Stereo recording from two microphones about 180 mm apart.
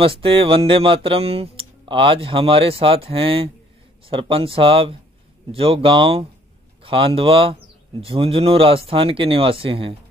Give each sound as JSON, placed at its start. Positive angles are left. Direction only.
{"t": 0.0, "sound": "speech", "side_deg": -30}